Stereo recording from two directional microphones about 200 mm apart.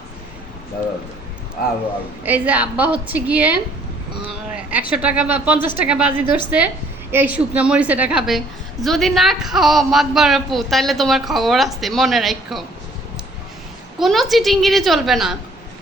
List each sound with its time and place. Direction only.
2.2 s a woman's voice: 10° right (ahead or behind)
4.7 s a woman's voice: 10° right (ahead or behind)
14.0 s a woman's voice: centre (ahead or behind)